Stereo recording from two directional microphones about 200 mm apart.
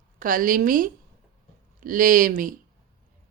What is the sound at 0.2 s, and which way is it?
Speech, 40° right (ahead or behind).